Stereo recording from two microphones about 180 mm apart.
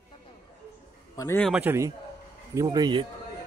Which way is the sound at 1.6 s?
15° right (ahead or behind).